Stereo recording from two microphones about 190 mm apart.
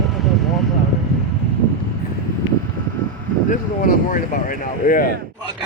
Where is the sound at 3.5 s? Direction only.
45° left (ahead or behind).